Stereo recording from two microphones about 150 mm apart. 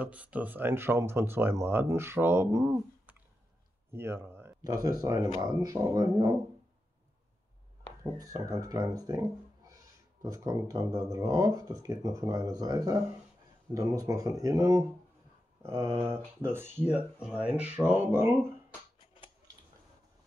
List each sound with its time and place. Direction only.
0.0 s speech: 10° right (ahead or behind)
8.0 s speech: 25° right (ahead or behind)